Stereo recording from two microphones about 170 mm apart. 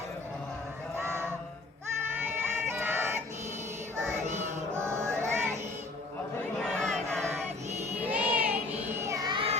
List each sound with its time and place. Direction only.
0.9 s music: 15° right (ahead or behind)
2.3 s a sound: 15° right (ahead or behind)
4.4 s chant: 15° right (ahead or behind)
5.2 s music: 15° right (ahead or behind)
6.6 s choir: 5° left (ahead or behind)
8.0 s child singing: 10° right (ahead or behind); by 9.6 s 30° right (ahead or behind)